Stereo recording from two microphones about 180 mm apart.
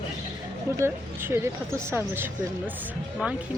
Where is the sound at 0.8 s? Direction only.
15° right (ahead or behind).